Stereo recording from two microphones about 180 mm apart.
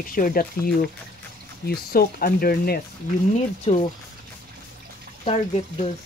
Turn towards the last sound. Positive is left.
turn(degrees=35)  # may be behind; listen again after turning